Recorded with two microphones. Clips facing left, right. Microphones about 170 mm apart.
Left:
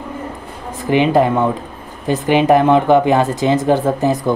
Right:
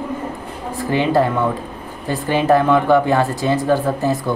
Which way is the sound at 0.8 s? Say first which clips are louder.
Left 3 dB; 20° left (ahead or behind).